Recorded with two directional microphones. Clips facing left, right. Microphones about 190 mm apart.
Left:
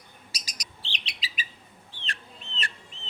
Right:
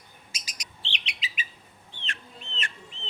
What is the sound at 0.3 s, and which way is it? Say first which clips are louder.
Bird: left 1 dB; 40° left (ahead or behind).